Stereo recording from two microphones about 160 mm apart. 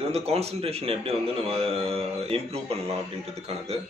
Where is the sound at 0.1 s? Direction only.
40° right (ahead or behind).